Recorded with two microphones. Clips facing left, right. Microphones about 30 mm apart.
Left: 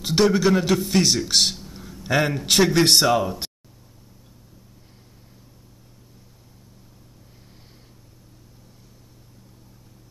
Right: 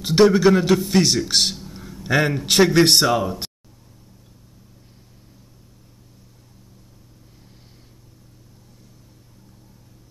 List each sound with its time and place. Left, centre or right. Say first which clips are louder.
0.0 s a man's voice: right 4 dB; centre